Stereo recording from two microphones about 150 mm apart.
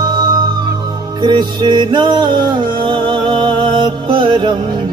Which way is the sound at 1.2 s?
30° right (ahead or behind).